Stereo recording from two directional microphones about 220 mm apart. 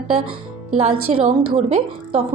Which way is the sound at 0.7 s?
25° right (ahead or behind).